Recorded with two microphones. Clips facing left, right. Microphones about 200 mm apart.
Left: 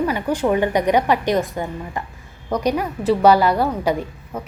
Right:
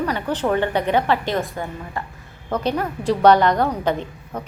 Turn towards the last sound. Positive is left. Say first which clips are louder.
# left 1 dB
turn(degrees=5)  # may be behind; listen again after turning